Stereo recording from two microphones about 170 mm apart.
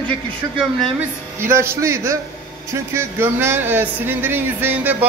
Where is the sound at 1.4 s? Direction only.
15° right (ahead or behind).